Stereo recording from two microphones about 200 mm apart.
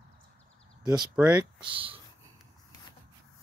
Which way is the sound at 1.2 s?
5° right (ahead or behind).